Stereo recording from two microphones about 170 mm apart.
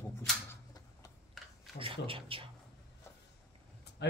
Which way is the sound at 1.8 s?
30° right (ahead or behind).